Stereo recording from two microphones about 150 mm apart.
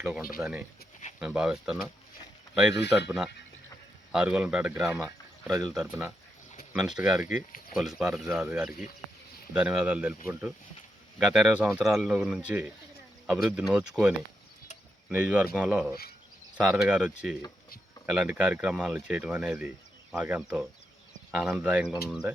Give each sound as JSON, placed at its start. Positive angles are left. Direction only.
{"t": 0.0, "sound": "speech", "side_deg": -10}
{"t": 2.9, "sound": "speech", "side_deg": -5}
{"t": 5.0, "sound": "a sound", "side_deg": -20}
{"t": 5.6, "sound": "speech", "side_deg": -5}
{"t": 11.2, "sound": "speech", "side_deg": -5}
{"t": 15.1, "sound": "speech", "side_deg": -10}